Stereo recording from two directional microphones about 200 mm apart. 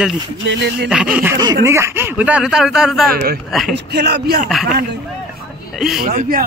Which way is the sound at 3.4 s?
Centre (ahead or behind).